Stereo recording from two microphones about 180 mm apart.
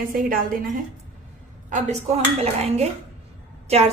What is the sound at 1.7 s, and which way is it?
A woman's voice, 40° right (ahead or behind).